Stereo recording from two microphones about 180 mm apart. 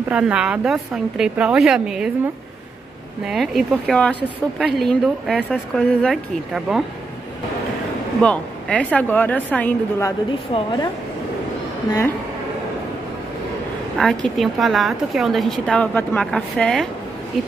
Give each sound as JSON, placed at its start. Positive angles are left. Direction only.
{"t": 0.1, "sound": "a woman's voice", "side_deg": -5}
{"t": 3.3, "sound": "a woman's voice", "side_deg": 0}
{"t": 8.2, "sound": "a woman's voice", "side_deg": 5}
{"t": 10.5, "sound": "a woman's voice", "side_deg": 25}
{"t": 13.9, "sound": "a woman's voice", "side_deg": 0}